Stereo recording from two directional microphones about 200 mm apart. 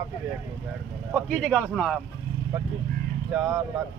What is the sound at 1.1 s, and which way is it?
Speech, 5° left (ahead or behind).